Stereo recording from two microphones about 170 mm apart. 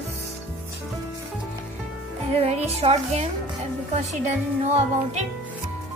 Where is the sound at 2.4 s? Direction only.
35° right (ahead or behind).